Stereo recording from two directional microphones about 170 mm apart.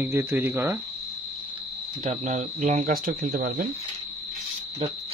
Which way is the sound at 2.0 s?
45° right (ahead or behind).